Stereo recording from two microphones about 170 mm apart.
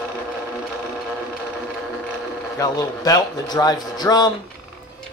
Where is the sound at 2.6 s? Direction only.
20° left (ahead or behind).